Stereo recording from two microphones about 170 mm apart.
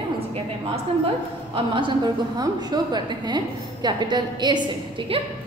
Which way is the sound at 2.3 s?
25° right (ahead or behind).